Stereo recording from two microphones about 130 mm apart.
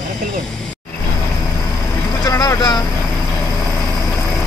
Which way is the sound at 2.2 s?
25° left (ahead or behind).